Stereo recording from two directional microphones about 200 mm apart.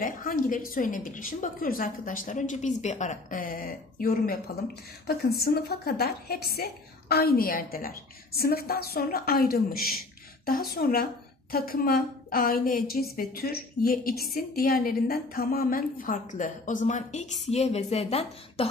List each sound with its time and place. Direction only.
0.0 s a woman's voice: 45° left (ahead or behind)